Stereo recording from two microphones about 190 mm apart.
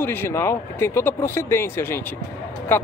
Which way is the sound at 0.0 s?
10° left (ahead or behind).